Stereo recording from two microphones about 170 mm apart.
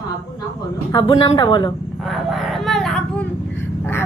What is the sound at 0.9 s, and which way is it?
Speech, 30° left (ahead or behind).